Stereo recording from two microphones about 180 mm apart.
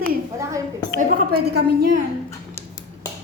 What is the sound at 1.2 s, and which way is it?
Speech, 60° right (ahead or behind).